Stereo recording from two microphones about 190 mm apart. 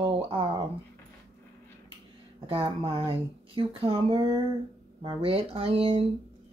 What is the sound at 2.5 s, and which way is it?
Speech, 25° right (ahead or behind).